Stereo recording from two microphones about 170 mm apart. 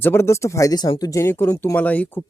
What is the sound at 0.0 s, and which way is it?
Speech, 15° left (ahead or behind).